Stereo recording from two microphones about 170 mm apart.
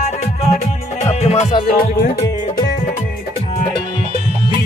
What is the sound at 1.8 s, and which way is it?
Music, 55° left (ahead or behind).